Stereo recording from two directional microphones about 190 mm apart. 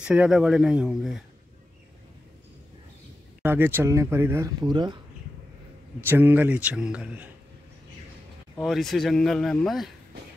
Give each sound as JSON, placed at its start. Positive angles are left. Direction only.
{"t": 0.0, "sound": "speech", "side_deg": -5}
{"t": 3.4, "sound": "speech", "side_deg": -10}
{"t": 6.0, "sound": "speech", "side_deg": -10}
{"t": 8.6, "sound": "speech", "side_deg": 0}